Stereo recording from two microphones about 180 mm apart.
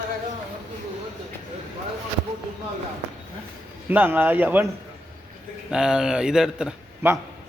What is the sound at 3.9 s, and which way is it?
Speech, 10° right (ahead or behind).